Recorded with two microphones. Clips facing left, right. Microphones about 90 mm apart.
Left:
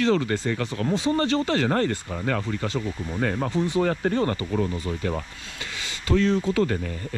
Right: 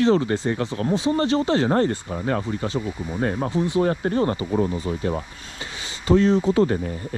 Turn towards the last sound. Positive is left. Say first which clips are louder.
# right 4 dB
turn(degrees=-25)  # may be behind; listen again after turning